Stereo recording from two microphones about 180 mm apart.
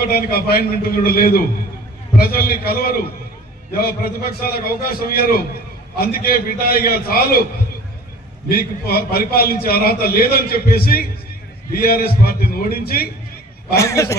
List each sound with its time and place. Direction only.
0.1 s a man's voice: 55° left (ahead or behind)
8.4 s a man's voice: 55° left (ahead or behind)
13.7 s a man's voice: 15° left (ahead or behind)